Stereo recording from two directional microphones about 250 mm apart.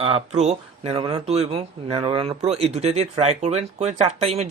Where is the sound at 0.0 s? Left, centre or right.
Right.